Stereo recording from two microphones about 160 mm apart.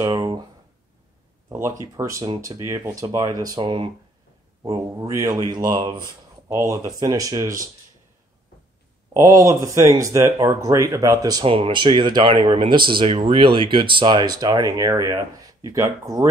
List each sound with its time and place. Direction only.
0.0 s speech: 30° right (ahead or behind)
1.5 s speech: 20° right (ahead or behind)
9.1 s speech: 20° right (ahead or behind)